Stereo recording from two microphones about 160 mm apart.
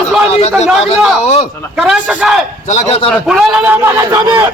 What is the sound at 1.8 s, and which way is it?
Speech, 5° right (ahead or behind).